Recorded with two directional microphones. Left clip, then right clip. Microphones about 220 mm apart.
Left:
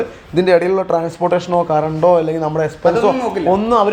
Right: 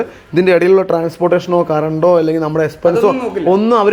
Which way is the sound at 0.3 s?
45° right (ahead or behind).